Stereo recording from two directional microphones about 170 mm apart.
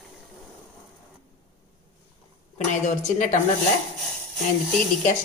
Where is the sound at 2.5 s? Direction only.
45° left (ahead or behind).